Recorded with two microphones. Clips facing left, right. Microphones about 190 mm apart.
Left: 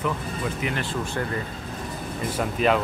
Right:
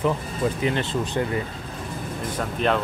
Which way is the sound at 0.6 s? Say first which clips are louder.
Right 4 dB; 20° right (ahead or behind).